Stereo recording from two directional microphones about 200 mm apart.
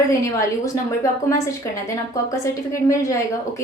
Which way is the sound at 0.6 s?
15° left (ahead or behind).